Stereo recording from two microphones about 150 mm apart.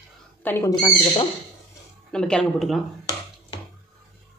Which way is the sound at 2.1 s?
5° left (ahead or behind).